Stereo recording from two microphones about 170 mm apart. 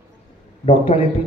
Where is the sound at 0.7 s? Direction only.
35° left (ahead or behind).